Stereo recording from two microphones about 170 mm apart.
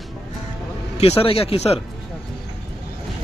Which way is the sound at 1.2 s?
35° left (ahead or behind).